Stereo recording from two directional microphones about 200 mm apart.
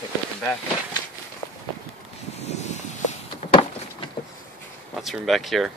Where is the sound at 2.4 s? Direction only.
35° left (ahead or behind).